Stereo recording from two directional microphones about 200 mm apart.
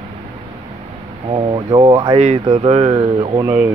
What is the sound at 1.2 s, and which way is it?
Speech, 25° right (ahead or behind).